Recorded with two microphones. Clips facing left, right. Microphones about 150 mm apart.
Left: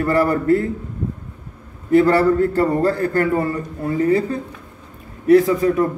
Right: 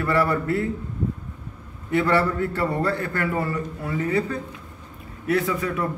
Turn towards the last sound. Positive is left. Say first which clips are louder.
# left 10 dB
turn(degrees=35)  # may be behind; listen again after turning